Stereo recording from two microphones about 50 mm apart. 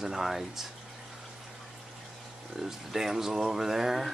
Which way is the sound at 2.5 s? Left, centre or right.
Centre.